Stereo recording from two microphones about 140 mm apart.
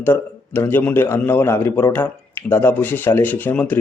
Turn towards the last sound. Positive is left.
turn(degrees=15)  # may be behind; listen again after turning